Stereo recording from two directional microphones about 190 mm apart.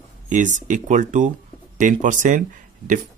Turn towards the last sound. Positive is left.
turn(degrees=-45)  # may be behind; listen again after turning